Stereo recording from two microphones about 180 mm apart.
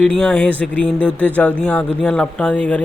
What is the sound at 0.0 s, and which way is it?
Speech, 5° left (ahead or behind).